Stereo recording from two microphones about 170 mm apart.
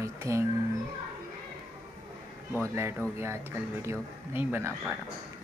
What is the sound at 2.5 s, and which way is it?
Speech, 15° right (ahead or behind).